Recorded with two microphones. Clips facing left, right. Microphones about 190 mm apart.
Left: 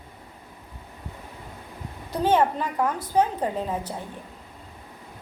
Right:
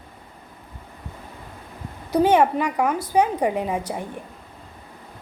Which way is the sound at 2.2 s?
10° right (ahead or behind).